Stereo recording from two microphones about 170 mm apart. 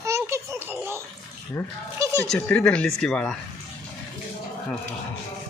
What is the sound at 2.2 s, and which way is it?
Speech, 10° left (ahead or behind).